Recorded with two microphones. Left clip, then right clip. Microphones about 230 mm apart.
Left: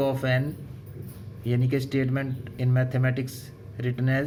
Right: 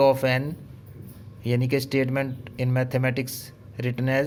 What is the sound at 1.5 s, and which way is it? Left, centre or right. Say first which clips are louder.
Speech: right 3 dB; right.